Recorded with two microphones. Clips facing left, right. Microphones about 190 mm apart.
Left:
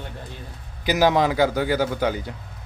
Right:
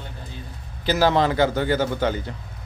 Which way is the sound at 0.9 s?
15° left (ahead or behind).